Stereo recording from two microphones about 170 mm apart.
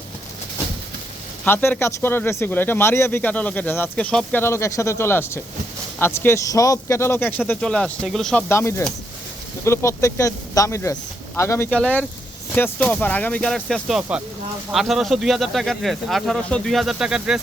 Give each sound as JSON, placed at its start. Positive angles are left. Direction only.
{"t": 1.5, "sound": "speech", "side_deg": 10}